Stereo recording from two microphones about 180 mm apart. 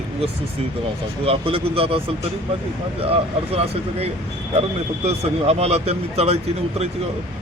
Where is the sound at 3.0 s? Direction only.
35° right (ahead or behind).